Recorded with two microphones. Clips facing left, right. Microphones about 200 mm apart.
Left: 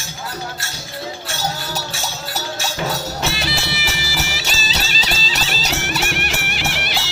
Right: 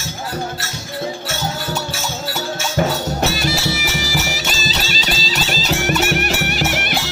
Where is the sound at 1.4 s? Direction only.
35° left (ahead or behind).